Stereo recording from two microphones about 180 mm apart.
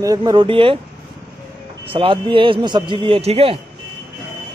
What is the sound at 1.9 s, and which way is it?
A man's voice, 30° right (ahead or behind).